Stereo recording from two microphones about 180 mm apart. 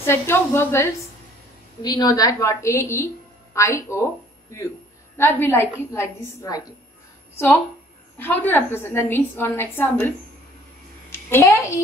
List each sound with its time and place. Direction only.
0.0 s a woman's voice: 15° left (ahead or behind)
8.2 s a woman's voice: 10° left (ahead or behind)
11.1 s a sound: 15° left (ahead or behind)